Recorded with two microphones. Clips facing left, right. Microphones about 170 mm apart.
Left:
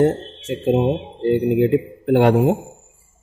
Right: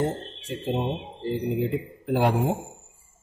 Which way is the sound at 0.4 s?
80° left.